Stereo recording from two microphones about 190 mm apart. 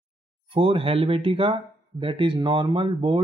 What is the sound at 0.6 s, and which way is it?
Speech, 30° right (ahead or behind).